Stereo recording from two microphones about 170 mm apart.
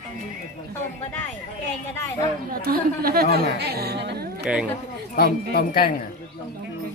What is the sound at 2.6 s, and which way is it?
A woman's voice, 60° right (ahead or behind).